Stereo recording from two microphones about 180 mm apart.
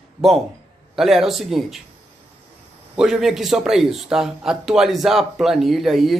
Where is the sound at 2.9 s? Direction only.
Centre (ahead or behind).